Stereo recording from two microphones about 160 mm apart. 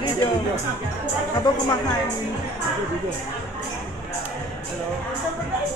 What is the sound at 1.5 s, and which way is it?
Speech, 25° left (ahead or behind).